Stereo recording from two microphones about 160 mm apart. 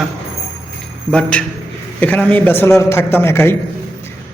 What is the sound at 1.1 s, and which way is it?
A man's voice, 5° left (ahead or behind).